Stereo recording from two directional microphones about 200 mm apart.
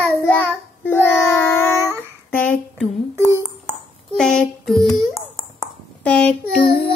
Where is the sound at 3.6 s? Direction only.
5° left (ahead or behind).